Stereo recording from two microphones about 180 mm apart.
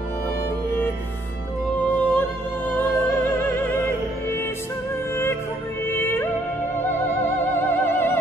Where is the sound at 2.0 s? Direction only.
10° left (ahead or behind).